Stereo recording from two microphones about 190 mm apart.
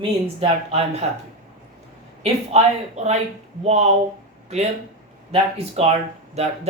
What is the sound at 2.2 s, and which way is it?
Speech, 35° right (ahead or behind).